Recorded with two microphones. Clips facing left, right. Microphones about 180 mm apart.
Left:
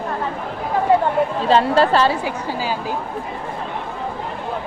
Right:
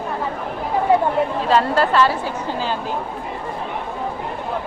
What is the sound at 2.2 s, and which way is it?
Speech, 10° left (ahead or behind).